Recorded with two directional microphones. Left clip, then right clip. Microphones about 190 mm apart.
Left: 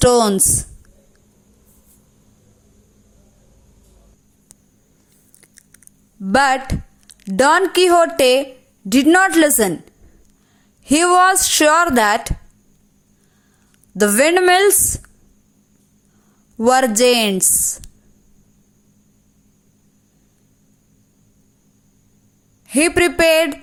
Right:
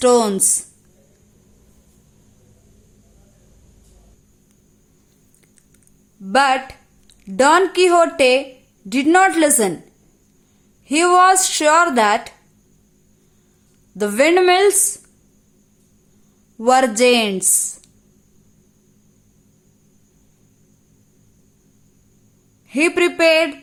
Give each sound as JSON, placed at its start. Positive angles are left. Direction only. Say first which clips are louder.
{"t": 0.0, "sound": "speech", "louder": "left 1 dB", "side_deg": 25}
{"t": 5.4, "sound": "a sound", "louder": "left 9 dB", "side_deg": 25}
{"t": 6.2, "sound": "a woman's voice", "louder": "left 1 dB", "side_deg": 35}
{"t": 10.8, "sound": "speech", "louder": "even", "side_deg": 25}
{"t": 14.0, "sound": "speech", "louder": "left 1 dB", "side_deg": 20}
{"t": 16.6, "sound": "speech", "louder": "even", "side_deg": 25}
{"t": 22.6, "sound": "speech", "louder": "left 1 dB", "side_deg": 25}